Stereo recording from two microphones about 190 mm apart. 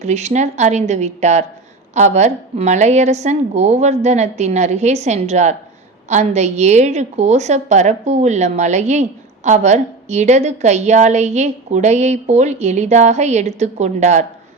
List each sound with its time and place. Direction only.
0.0 s a woman's voice: 35° right (ahead or behind)